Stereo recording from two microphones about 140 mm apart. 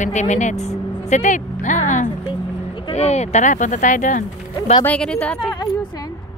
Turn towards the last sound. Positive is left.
turn(degrees=30)  # may be behind; listen again after turning